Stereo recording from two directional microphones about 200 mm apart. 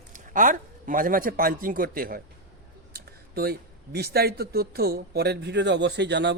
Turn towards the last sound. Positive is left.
turn(degrees=-60)  # may be behind; listen again after turning